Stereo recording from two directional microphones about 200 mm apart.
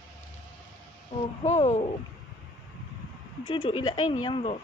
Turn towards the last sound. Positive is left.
turn(degrees=25)  # may be behind; listen again after turning